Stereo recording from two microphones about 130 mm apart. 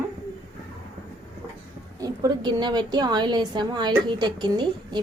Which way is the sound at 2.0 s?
30° right (ahead or behind).